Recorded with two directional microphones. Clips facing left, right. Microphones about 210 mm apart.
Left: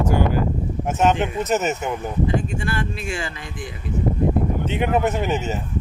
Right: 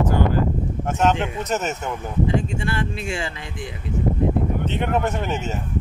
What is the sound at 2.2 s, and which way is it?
Speech, 25° right (ahead or behind).